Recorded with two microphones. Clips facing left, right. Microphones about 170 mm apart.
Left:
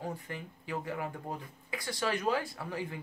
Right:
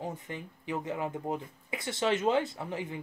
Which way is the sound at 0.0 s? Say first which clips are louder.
Right 1 dB; 20° right (ahead or behind).